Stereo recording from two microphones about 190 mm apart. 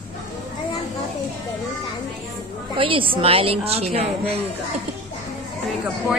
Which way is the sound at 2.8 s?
30° right (ahead or behind).